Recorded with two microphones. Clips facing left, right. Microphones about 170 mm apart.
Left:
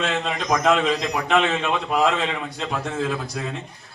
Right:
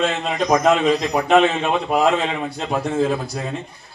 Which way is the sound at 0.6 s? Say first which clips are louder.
Right 3 dB; 45° right (ahead or behind).